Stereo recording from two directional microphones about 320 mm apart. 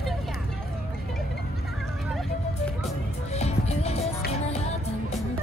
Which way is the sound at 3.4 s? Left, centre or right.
Centre.